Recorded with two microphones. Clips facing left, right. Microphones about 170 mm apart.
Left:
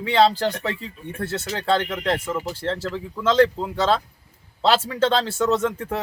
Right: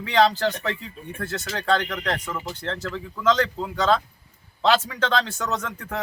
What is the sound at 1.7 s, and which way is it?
A man's voice, 25° left (ahead or behind).